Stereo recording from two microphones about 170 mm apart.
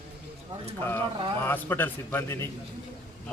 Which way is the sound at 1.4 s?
10° left (ahead or behind).